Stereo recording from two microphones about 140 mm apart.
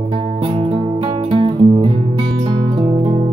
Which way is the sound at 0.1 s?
40° right (ahead or behind).